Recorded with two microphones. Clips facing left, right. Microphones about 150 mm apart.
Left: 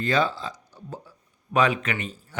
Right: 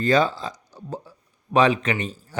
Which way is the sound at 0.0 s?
40° right (ahead or behind).